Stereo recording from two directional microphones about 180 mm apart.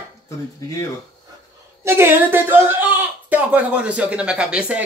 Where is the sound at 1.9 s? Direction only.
15° right (ahead or behind).